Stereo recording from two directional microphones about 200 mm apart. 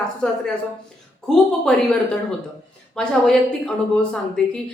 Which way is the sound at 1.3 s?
5° left (ahead or behind).